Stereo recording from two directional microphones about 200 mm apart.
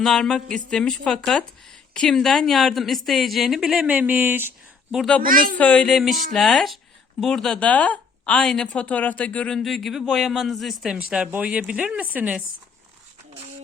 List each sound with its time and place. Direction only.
0.0 s speech: centre (ahead or behind)
5.2 s speech: 45° right (ahead or behind)
5.5 s speech: 5° left (ahead or behind)